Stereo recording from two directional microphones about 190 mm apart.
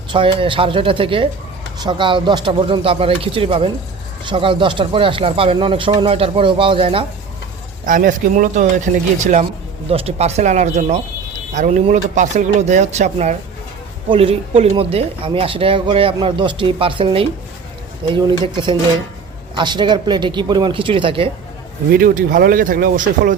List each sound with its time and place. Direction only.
0.1 s speech: 25° right (ahead or behind)
7.9 s speech: 45° right (ahead or behind); by 21.2 s 30° right (ahead or behind)
21.9 s speech: 50° right (ahead or behind)